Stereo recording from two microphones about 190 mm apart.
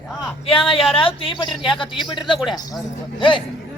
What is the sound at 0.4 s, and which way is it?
Speech, 30° left (ahead or behind).